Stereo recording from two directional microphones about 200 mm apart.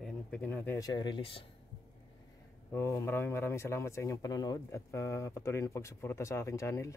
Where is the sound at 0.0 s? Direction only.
5° left (ahead or behind); by 1.4 s 25° left (ahead or behind).